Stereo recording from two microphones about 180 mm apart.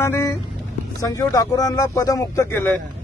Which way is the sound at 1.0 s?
20° left (ahead or behind).